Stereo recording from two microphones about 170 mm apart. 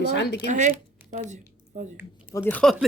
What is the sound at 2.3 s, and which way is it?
Speech, 15° left (ahead or behind).